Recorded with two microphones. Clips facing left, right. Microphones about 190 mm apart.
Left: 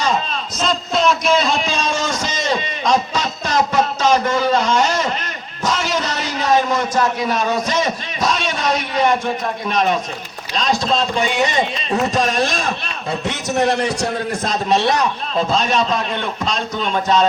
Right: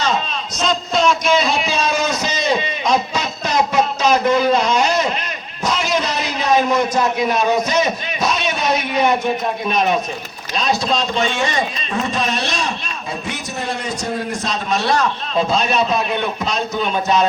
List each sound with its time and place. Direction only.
0.6 s a sound: centre (ahead or behind)
10.5 s a man's voice: 5° right (ahead or behind)
11.2 s a man's voice: 15° left (ahead or behind)
11.9 s a man's voice: 45° left (ahead or behind)
13.2 s a man's voice: 75° left (ahead or behind)
14.7 s a man's voice: 25° left (ahead or behind)
15.4 s a man's voice: 5° right (ahead or behind)